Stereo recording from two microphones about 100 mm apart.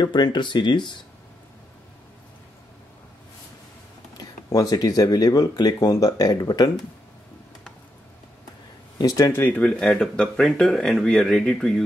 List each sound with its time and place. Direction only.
0.0 s speech: 45° left (ahead or behind)
4.2 s speech: 40° left (ahead or behind)
8.9 s speech: 35° left (ahead or behind)
9.3 s speech: 25° left (ahead or behind)
9.6 s speech: 10° left (ahead or behind)